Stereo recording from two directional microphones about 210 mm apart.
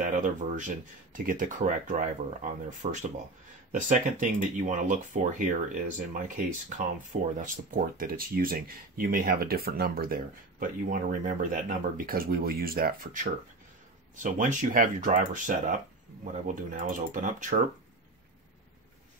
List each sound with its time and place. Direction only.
0.0 s speech: 35° right (ahead or behind)